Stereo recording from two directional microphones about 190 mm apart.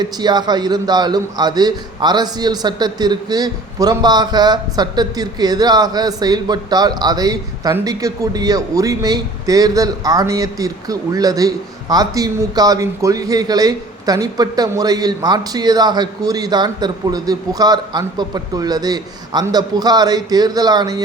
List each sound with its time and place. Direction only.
0.0 s a man's voice: 20° right (ahead or behind)